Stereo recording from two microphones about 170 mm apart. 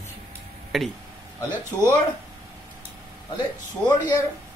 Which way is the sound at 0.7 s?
Centre (ahead or behind).